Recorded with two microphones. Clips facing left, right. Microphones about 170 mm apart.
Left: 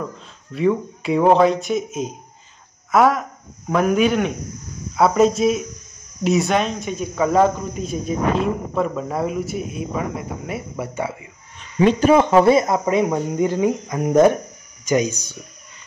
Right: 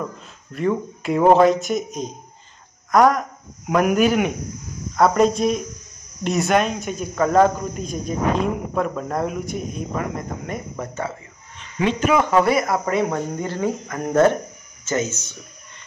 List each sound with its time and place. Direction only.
0.5 s speech: centre (ahead or behind)
11.8 s speech: 30° left (ahead or behind); by 15.3 s 15° left (ahead or behind)